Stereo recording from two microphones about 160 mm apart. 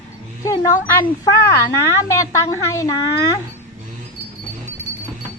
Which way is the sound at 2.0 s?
20° left (ahead or behind).